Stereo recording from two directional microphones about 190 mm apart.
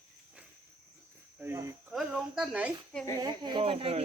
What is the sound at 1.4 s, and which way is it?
Speech, 15° right (ahead or behind).